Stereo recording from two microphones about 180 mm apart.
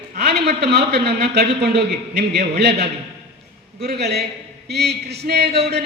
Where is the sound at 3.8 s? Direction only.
65° right (ahead or behind).